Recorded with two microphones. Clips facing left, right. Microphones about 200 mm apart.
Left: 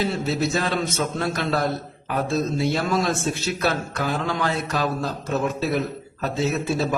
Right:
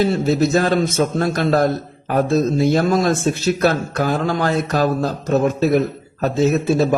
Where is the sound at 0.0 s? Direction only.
40° right (ahead or behind).